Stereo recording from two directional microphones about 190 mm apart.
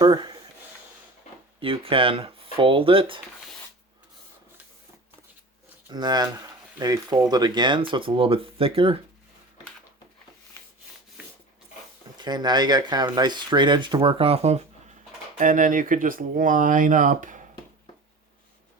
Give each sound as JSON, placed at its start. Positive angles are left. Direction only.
{"t": 0.0, "sound": "speech", "side_deg": -20}
{"t": 1.5, "sound": "speech", "side_deg": -30}
{"t": 5.9, "sound": "speech", "side_deg": -20}
{"t": 12.1, "sound": "speech", "side_deg": -20}
{"t": 15.4, "sound": "speech", "side_deg": -45}